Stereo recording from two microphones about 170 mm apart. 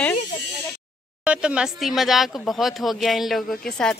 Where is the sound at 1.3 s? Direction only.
5° right (ahead or behind).